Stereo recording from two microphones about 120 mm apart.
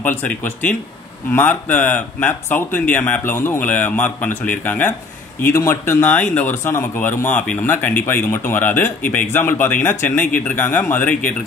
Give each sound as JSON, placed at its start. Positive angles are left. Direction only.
{"t": 0.0, "sound": "speech", "side_deg": 15}